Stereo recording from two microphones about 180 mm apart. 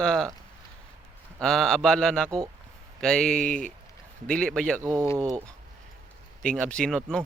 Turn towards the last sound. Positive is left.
turn(degrees=5)  # may be behind; listen again after turning